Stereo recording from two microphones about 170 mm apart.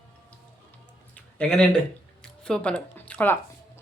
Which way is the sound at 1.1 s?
5° left (ahead or behind).